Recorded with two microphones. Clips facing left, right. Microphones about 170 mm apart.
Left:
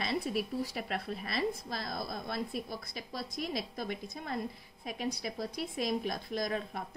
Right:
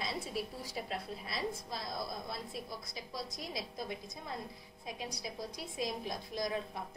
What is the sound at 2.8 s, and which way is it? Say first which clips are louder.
Speech: left 2 dB; 55° left (ahead or behind).